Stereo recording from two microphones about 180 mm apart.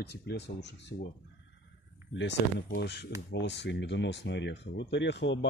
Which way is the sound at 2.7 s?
65° left (ahead or behind).